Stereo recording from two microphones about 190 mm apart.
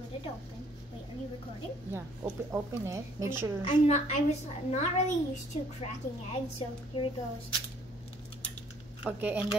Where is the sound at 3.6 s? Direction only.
35° left (ahead or behind).